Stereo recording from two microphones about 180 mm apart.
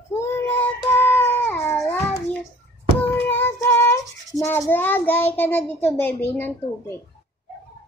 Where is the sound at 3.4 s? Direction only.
15° left (ahead or behind).